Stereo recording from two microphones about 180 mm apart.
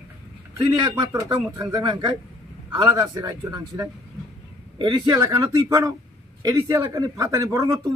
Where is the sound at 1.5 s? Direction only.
25° right (ahead or behind).